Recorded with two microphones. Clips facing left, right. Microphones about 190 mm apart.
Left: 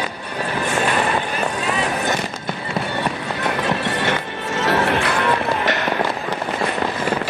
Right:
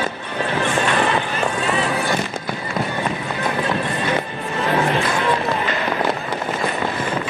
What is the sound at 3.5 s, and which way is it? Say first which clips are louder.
Horse: even; 80° left.